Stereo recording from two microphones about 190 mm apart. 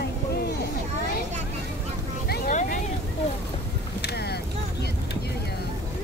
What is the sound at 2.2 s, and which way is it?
Vehicle, 55° left (ahead or behind).